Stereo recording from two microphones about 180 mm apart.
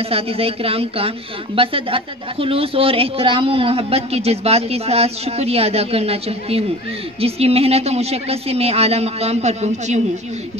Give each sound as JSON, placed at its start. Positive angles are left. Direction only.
{"t": 0.1, "sound": "a woman's voice", "side_deg": -35}